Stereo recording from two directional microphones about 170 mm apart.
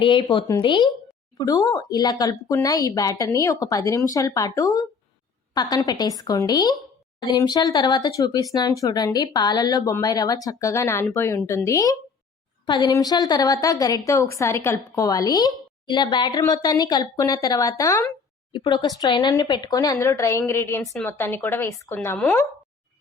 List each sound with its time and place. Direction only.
0.0 s speech: 30° left (ahead or behind); by 22.4 s 10° left (ahead or behind)